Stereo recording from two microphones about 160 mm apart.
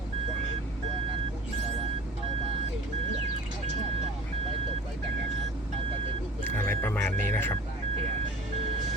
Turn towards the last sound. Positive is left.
turn(degrees=10)  # may be behind; listen again after turning